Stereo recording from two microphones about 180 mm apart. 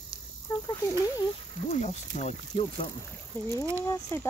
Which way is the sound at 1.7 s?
40° left (ahead or behind).